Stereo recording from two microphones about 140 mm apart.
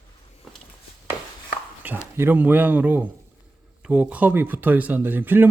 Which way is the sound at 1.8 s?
15° right (ahead or behind).